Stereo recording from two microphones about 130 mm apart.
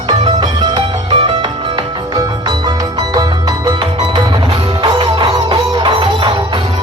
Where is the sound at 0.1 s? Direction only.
35° right (ahead or behind).